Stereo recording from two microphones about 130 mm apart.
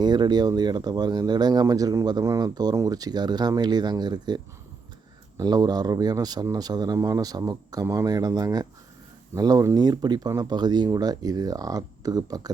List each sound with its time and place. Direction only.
0.0 s speech: 35° right (ahead or behind)
5.4 s speech: 30° right (ahead or behind)